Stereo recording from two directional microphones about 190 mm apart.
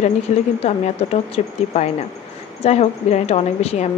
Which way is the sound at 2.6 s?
35° left (ahead or behind).